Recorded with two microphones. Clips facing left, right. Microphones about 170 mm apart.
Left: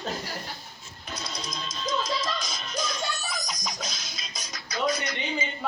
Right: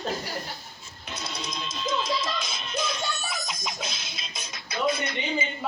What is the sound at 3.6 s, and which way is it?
Music, 5° right (ahead or behind).